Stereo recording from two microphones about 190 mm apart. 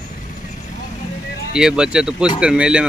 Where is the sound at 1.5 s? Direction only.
5° right (ahead or behind).